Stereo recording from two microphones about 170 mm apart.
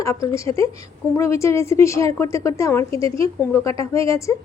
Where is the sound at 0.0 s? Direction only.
20° left (ahead or behind).